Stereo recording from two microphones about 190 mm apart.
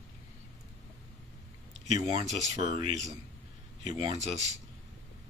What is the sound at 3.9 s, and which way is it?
Speech, 35° right (ahead or behind).